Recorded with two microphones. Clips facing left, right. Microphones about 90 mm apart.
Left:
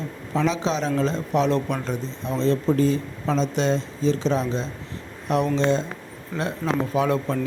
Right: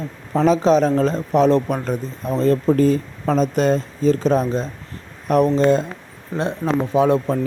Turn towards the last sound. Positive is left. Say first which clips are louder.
# right 6 dB
turn(degrees=-30)  # may be behind; listen again after turning